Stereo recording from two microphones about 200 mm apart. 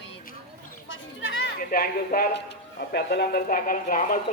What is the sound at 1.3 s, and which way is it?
Speech, 50° left (ahead or behind).